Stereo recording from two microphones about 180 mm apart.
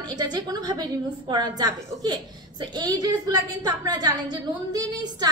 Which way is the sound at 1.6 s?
20° right (ahead or behind).